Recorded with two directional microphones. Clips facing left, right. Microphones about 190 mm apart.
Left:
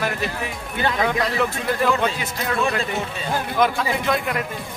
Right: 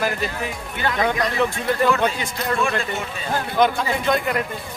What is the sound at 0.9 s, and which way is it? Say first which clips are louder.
Speech: right 2 dB; centre (ahead or behind).